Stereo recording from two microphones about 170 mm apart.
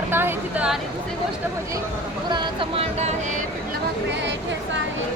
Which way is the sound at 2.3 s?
30° right (ahead or behind).